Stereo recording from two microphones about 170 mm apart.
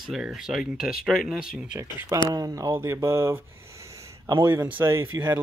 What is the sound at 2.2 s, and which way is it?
Speech, 20° right (ahead or behind).